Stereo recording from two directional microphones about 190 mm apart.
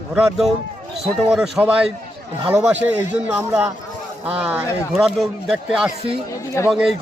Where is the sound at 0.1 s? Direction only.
Centre (ahead or behind).